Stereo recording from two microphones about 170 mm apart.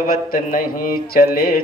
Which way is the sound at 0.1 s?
60° left (ahead or behind).